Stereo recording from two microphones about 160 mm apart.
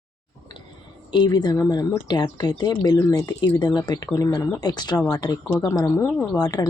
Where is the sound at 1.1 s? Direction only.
25° left (ahead or behind).